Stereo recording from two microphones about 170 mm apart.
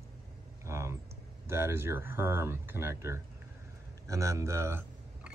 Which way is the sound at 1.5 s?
15° right (ahead or behind).